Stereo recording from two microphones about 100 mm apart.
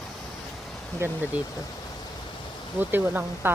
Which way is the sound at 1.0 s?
25° right (ahead or behind).